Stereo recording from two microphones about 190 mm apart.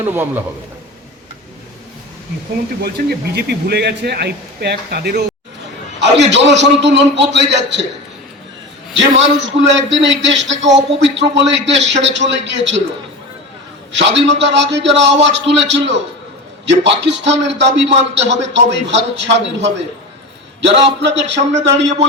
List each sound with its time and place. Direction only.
0.0 s a man's voice: 10° right (ahead or behind)
2.8 s a man's voice: 55° right (ahead or behind)
8.9 s a man's voice: 70° right (ahead or behind)
13.9 s a man's voice: 70° right (ahead or behind)